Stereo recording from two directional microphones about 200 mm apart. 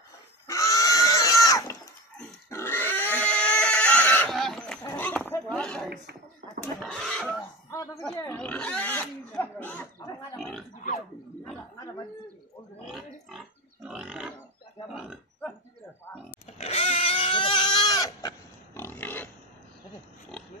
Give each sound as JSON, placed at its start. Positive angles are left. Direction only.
{"t": 0.5, "sound": "goat", "side_deg": 15}
{"t": 2.1, "sound": "pig", "side_deg": 10}
{"t": 6.6, "sound": "a sound", "side_deg": 5}
{"t": 8.3, "sound": "pig", "side_deg": 5}
{"t": 13.3, "sound": "pig", "side_deg": -5}
{"t": 16.4, "sound": "goat", "side_deg": 30}
{"t": 18.8, "sound": "pig", "side_deg": 10}